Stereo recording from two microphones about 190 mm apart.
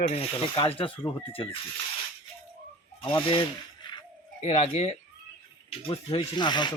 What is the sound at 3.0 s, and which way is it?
Speech, 25° left (ahead or behind).